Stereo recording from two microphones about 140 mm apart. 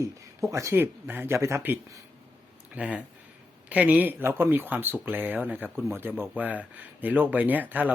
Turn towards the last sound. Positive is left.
turn(degrees=-10)  # may be behind; listen again after turning